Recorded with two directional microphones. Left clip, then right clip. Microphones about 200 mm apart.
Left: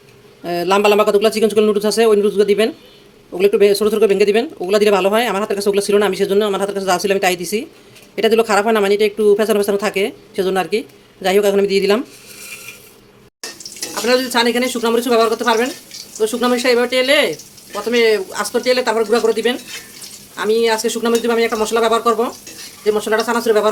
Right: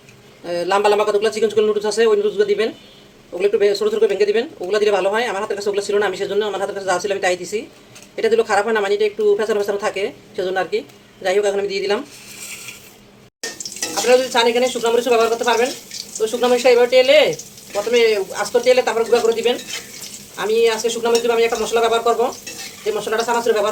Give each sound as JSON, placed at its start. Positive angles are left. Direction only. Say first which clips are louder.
{"t": 0.4, "sound": "a man's voice", "louder": "left 2 dB", "side_deg": 45}
{"t": 14.1, "sound": "speech", "louder": "right 1 dB", "side_deg": 55}
{"t": 20.3, "sound": "speech", "louder": "left 1 dB", "side_deg": 60}